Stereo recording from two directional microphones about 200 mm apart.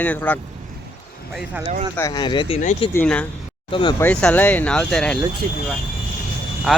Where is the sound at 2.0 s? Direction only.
15° left (ahead or behind).